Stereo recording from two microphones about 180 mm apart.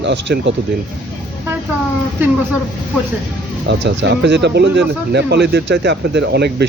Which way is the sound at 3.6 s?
75° right (ahead or behind).